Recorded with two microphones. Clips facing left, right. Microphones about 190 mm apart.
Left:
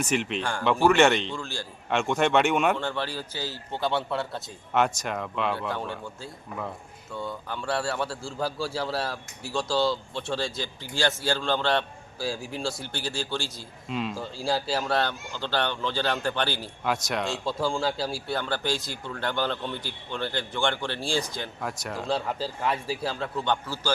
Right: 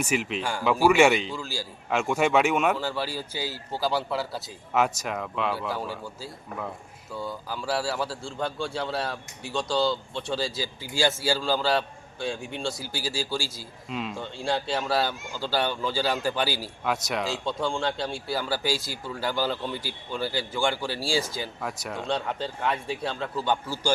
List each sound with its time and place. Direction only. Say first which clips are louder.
0.0 s a man's voice: even; 5° right (ahead or behind)
23.6 s a man's voice: right 2 dB; 15° right (ahead or behind)